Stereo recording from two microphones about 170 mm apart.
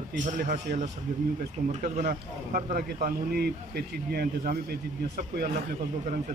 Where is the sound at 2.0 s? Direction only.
55° right (ahead or behind).